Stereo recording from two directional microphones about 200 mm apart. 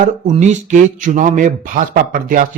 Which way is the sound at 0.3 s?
35° right (ahead or behind).